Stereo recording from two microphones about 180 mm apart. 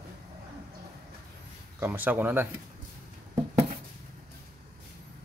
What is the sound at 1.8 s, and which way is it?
Speech, 10° right (ahead or behind).